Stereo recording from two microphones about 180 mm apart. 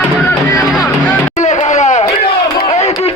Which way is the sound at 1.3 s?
40° left (ahead or behind).